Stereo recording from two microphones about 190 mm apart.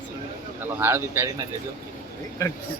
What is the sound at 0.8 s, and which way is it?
Speech, 10° right (ahead or behind).